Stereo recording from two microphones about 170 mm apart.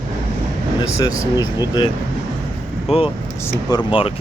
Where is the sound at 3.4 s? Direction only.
20° left (ahead or behind).